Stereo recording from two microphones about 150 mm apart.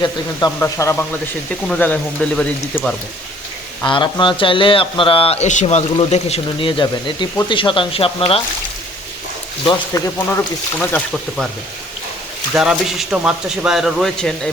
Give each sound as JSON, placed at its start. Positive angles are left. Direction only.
{"t": 0.0, "sound": "speech", "side_deg": 25}
{"t": 0.6, "sound": "speech", "side_deg": 15}
{"t": 3.8, "sound": "a man's voice", "side_deg": 35}
{"t": 9.9, "sound": "speech", "side_deg": 25}
{"t": 10.8, "sound": "speech", "side_deg": 5}
{"t": 12.5, "sound": "speech", "side_deg": -5}